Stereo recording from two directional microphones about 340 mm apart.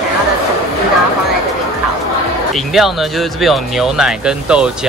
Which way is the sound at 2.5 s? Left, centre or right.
Centre.